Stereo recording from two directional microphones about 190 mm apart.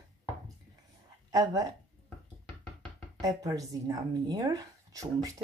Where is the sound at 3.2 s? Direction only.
20° right (ahead or behind).